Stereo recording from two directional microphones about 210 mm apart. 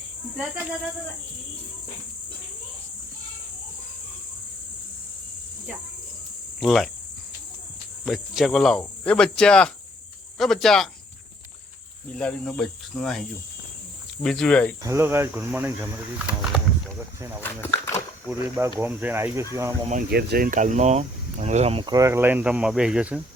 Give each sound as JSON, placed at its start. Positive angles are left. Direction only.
{"t": 0.3, "sound": "speech", "side_deg": -10}
{"t": 6.6, "sound": "cricket", "side_deg": 0}
{"t": 8.0, "sound": "cricket", "side_deg": 0}
{"t": 12.1, "sound": "cricket", "side_deg": 5}
{"t": 14.8, "sound": "speech", "side_deg": -10}
{"t": 17.4, "sound": "dog", "side_deg": 10}
{"t": 18.3, "sound": "speech", "side_deg": -10}
{"t": 19.9, "sound": "speech", "side_deg": -45}